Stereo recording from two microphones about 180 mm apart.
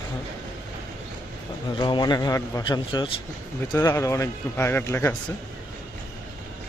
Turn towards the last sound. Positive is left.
turn(degrees=15)  # may be behind; listen again after turning